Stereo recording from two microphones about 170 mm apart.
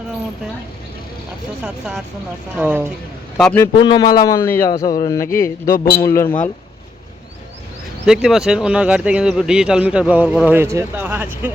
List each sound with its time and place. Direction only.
1.6 s speech: 5° right (ahead or behind)
3.3 s a man's voice: 15° left (ahead or behind)
3.8 s a man's voice: 25° left (ahead or behind)
8.0 s speech: 5° right (ahead or behind)